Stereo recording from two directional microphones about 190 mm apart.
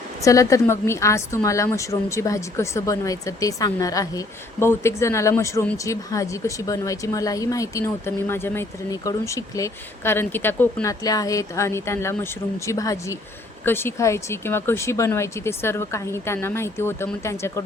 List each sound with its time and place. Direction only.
0.2 s speech: 15° left (ahead or behind)